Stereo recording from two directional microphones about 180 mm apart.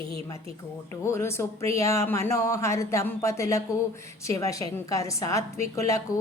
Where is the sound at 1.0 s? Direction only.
15° left (ahead or behind).